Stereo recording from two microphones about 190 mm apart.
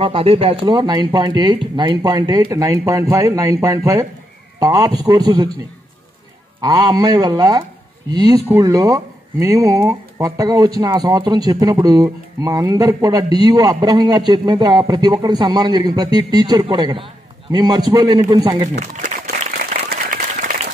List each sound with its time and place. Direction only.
0.0 s speech: 30° right (ahead or behind)
6.6 s speech: 20° right (ahead or behind)
18.9 s a sound: 60° right (ahead or behind)
19.5 s applause: 50° right (ahead or behind)